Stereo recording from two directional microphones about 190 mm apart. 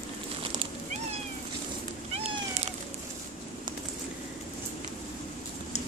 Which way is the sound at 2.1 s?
35° right (ahead or behind).